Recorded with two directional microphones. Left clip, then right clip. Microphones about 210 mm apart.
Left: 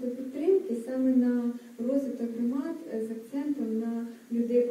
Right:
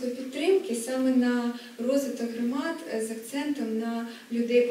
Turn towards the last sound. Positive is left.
turn(degrees=10)  # may be behind; listen again after turning